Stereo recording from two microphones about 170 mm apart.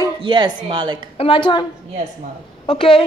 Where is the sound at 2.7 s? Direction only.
30° left (ahead or behind).